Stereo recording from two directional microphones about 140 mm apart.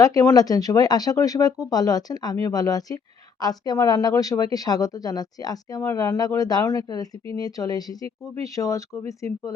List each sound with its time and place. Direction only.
0.0 s speech: 25° left (ahead or behind)